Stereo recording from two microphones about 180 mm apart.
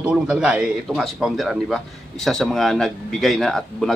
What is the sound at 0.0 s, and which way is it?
A man's voice, 5° right (ahead or behind).